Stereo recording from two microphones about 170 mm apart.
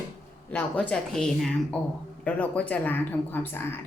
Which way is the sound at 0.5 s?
5° left (ahead or behind).